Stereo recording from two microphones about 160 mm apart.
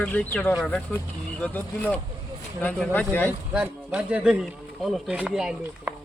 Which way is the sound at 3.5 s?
5° right (ahead or behind).